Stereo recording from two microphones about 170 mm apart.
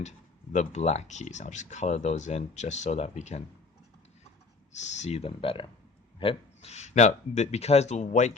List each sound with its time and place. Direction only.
0.5 s speech: 40° left (ahead or behind)
4.7 s speech: 40° left (ahead or behind)